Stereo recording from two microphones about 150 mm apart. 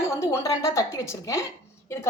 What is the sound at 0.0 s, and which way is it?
A woman's voice, 20° left (ahead or behind).